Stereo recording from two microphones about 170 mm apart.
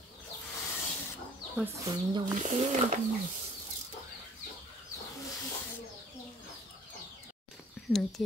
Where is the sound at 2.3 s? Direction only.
45° right (ahead or behind).